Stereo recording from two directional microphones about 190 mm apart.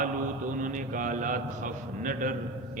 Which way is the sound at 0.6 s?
45° right (ahead or behind).